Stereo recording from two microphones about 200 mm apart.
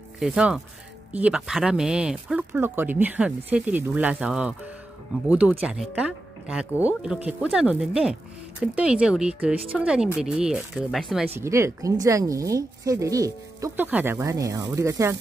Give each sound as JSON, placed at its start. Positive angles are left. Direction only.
{"t": 0.2, "sound": "speech", "side_deg": -5}
{"t": 11.3, "sound": "speech", "side_deg": -15}